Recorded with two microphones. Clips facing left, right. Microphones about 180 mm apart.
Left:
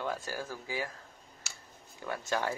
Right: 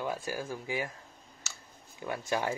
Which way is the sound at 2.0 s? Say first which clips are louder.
Right 1 dB; 15° right (ahead or behind).